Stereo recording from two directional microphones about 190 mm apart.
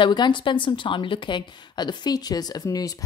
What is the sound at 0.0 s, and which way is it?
A woman's voice, 25° left (ahead or behind).